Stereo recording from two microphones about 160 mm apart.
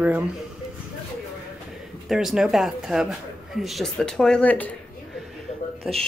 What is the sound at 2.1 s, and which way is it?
Speech, centre (ahead or behind).